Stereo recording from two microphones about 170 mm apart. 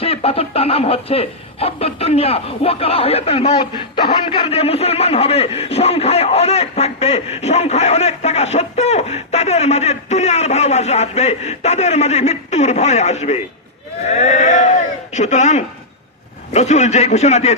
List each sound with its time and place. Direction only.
0.0 s speech: 35° left (ahead or behind)